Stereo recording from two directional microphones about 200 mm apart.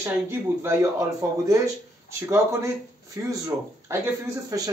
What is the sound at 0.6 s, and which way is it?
Speech, 15° right (ahead or behind).